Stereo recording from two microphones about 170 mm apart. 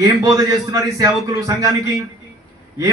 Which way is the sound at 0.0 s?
25° right (ahead or behind).